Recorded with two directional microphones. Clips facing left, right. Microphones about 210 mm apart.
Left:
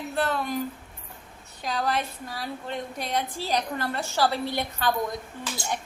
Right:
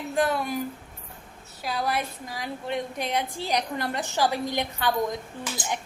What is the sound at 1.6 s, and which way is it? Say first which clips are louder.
A woman's voice: even; 10° right (ahead or behind).